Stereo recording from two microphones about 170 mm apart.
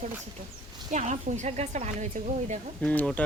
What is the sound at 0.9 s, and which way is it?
A woman's voice, 45° right (ahead or behind).